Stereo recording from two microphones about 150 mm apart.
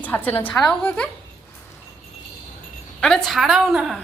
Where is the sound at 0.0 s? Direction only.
10° left (ahead or behind).